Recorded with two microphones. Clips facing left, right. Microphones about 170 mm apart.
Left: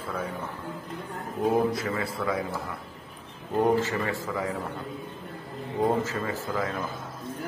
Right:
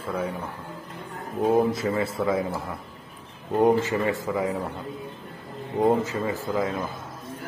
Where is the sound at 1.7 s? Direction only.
25° right (ahead or behind).